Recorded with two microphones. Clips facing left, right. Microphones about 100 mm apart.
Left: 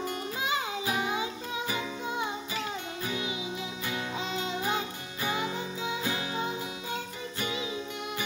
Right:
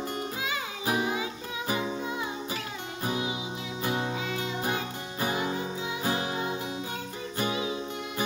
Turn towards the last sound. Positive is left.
turn(degrees=-40)  # may be behind; listen again after turning